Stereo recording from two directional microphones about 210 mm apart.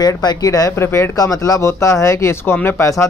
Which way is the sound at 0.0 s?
20° left (ahead or behind).